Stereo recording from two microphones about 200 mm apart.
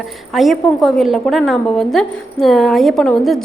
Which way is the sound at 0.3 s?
Centre (ahead or behind).